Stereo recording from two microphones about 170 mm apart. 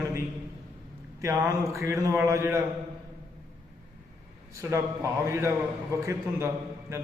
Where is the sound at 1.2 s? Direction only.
15° right (ahead or behind).